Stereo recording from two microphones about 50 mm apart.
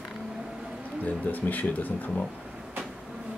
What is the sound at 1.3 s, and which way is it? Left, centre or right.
Speech, left.